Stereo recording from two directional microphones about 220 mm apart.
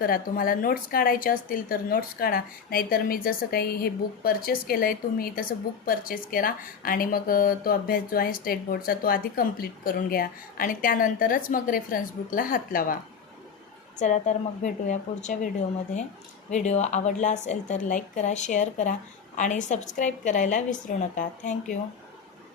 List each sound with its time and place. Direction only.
0.0 s a woman's voice: 40° left (ahead or behind)
14.0 s a woman's voice: 35° left (ahead or behind)
16.5 s a woman's voice: 30° left (ahead or behind)